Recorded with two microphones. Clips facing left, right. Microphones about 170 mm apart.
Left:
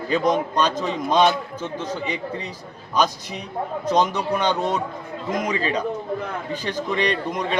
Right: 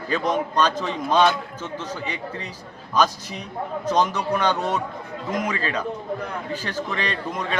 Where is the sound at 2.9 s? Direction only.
10° left (ahead or behind).